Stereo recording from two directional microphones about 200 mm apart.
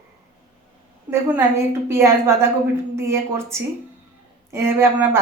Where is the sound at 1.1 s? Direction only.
10° right (ahead or behind).